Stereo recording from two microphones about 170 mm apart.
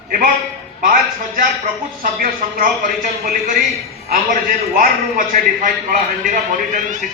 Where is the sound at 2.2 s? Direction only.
50° right (ahead or behind).